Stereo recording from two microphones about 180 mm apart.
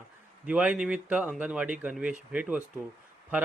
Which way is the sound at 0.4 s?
5° right (ahead or behind).